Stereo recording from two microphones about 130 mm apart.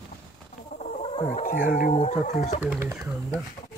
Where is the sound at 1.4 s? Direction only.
90° left; by 2.6 s 70° left (ahead or behind).